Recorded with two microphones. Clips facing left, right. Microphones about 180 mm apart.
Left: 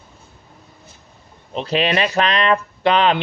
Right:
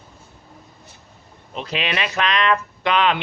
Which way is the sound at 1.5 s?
35° left (ahead or behind).